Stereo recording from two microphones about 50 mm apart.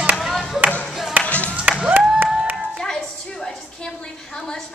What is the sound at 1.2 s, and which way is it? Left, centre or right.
Music, left.